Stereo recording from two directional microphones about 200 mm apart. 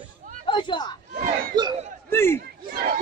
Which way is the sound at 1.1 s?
40° right (ahead or behind).